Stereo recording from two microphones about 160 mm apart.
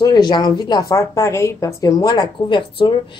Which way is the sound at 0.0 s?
25° left (ahead or behind).